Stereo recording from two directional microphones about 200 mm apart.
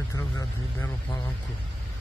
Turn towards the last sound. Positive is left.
turn(degrees=15)  # may be behind; listen again after turning